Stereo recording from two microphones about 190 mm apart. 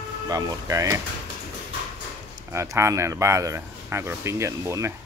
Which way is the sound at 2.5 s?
15° right (ahead or behind).